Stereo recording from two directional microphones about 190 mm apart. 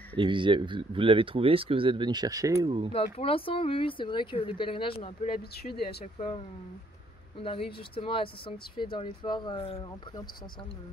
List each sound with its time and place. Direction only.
0.2 s speech: 25° right (ahead or behind)
2.9 s speech: 30° left (ahead or behind)
5.6 s speech: 60° left (ahead or behind)
6.1 s speech: 30° left (ahead or behind)